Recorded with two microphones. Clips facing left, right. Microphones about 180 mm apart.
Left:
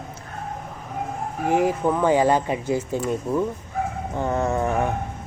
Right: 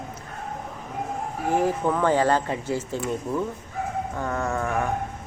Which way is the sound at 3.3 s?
5° left (ahead or behind).